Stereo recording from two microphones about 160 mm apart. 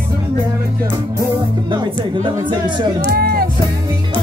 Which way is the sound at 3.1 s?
70° right (ahead or behind).